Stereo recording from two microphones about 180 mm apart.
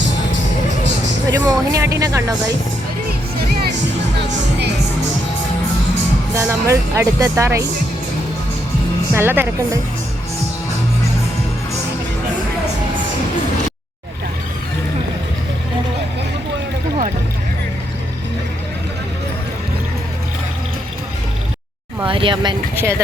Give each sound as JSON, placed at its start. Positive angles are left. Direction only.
{"t": 1.3, "sound": "speech", "side_deg": -20}
{"t": 6.3, "sound": "speech", "side_deg": -15}
{"t": 9.1, "sound": "speech", "side_deg": -10}
{"t": 22.0, "sound": "speech", "side_deg": -30}
{"t": 22.8, "sound": "speech", "side_deg": -15}